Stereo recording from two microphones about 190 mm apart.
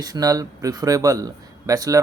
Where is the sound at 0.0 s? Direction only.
20° right (ahead or behind).